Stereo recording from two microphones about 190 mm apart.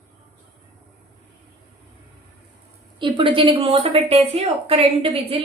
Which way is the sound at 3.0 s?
25° right (ahead or behind).